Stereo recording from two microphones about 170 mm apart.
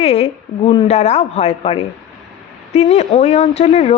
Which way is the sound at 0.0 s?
35° left (ahead or behind).